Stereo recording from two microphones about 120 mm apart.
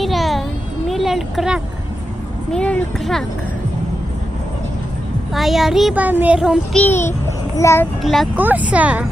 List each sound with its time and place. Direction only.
0.0 s a sound: centre (ahead or behind)
2.5 s speech: 10° left (ahead or behind)
5.3 s speech: centre (ahead or behind)
5.9 s speech: 15° right (ahead or behind)
6.7 s a child's voice: 10° left (ahead or behind)
7.5 s a child's voice: 20° left (ahead or behind)
8.0 s speech: centre (ahead or behind)
8.4 s speech: 15° right (ahead or behind)